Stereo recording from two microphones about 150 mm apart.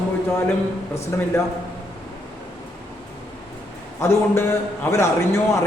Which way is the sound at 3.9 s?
15° left (ahead or behind).